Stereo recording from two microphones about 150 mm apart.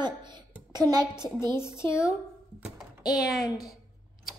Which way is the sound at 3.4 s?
25° left (ahead or behind).